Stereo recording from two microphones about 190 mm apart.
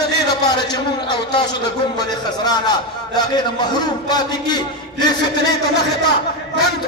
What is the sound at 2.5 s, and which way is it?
A man's voice, 20° left (ahead or behind).